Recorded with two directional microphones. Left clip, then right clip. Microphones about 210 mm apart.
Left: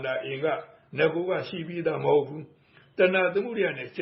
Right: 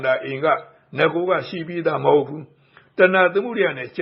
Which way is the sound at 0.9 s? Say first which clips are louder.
Right 6 dB; 15° right (ahead or behind).